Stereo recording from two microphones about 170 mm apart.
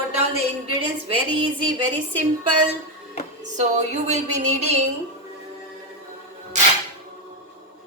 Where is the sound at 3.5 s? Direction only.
45° right (ahead or behind).